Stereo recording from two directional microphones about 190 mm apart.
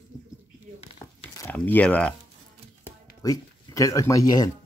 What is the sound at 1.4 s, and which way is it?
Speech, 10° left (ahead or behind).